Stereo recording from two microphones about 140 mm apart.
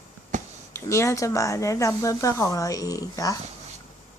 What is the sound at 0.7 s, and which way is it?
Speech, 20° left (ahead or behind).